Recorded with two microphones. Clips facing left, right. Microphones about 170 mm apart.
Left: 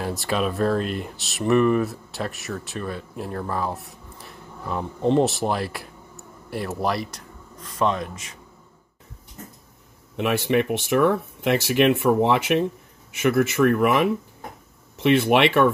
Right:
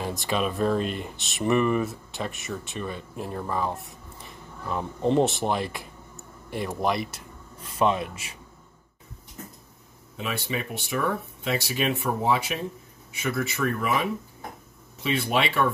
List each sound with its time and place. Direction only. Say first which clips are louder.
0.2 s speech: left 2 dB; centre (ahead or behind)
10.1 s speech: left 10 dB; 70° left (ahead or behind)